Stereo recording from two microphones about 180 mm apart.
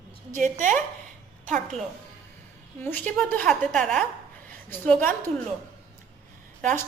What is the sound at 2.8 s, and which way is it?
A woman's voice, 10° left (ahead or behind).